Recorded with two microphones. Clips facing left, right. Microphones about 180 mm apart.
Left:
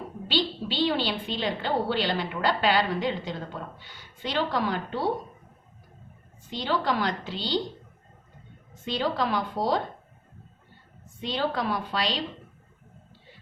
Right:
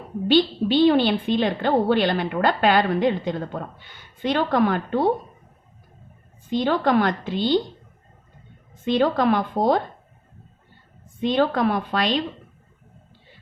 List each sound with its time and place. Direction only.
0.3 s a woman's voice: 50° right (ahead or behind)
6.5 s a woman's voice: 50° right (ahead or behind)
8.8 s a woman's voice: 50° right (ahead or behind)
11.2 s a woman's voice: 55° right (ahead or behind)